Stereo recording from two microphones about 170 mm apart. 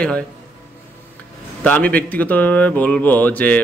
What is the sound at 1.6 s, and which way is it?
A man's voice, 10° left (ahead or behind).